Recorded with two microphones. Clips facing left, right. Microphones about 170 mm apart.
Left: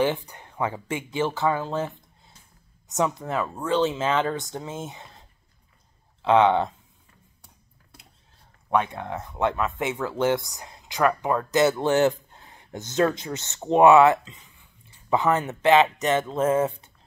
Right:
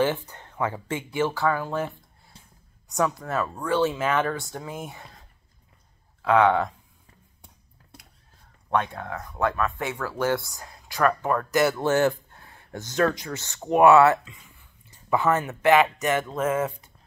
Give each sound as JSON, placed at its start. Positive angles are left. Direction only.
{"t": 0.0, "sound": "speech", "side_deg": 15}
{"t": 2.3, "sound": "a sound", "side_deg": -30}
{"t": 2.9, "sound": "speech", "side_deg": 20}
{"t": 6.2, "sound": "speech", "side_deg": 25}
{"t": 8.9, "sound": "speech", "side_deg": 20}